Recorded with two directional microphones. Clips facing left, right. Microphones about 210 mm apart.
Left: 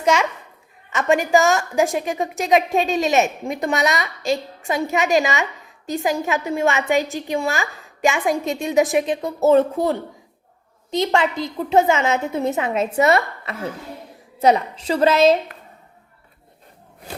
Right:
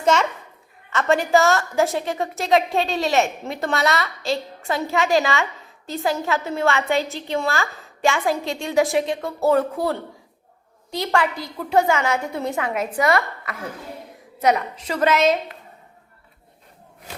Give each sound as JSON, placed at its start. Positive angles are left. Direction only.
{"t": 0.0, "sound": "a child's voice", "side_deg": 10}